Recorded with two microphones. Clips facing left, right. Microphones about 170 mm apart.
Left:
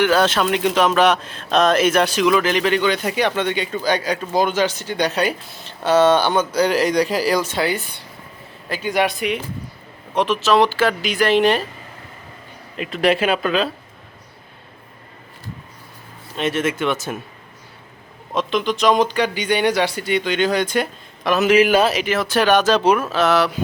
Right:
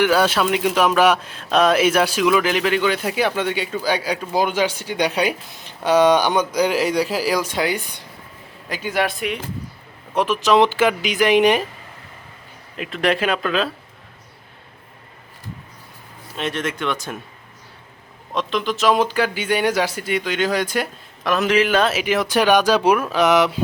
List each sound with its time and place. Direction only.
0.0 s speech: 10° right (ahead or behind)
10.2 s speech: 15° right (ahead or behind)
12.7 s speech: centre (ahead or behind)
16.4 s speech: 5° left (ahead or behind)
18.3 s a man's voice: centre (ahead or behind)
22.0 s speech: 15° right (ahead or behind)